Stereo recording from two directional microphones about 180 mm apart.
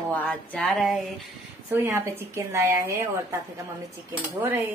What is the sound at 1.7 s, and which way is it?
A woman's voice, 15° right (ahead or behind).